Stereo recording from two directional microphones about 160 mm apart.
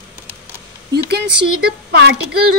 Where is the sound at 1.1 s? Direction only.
85° right.